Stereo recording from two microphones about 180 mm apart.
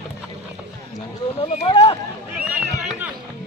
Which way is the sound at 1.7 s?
25° left (ahead or behind).